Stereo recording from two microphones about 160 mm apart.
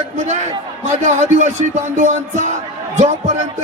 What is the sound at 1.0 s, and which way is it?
A man's voice, 45° right (ahead or behind).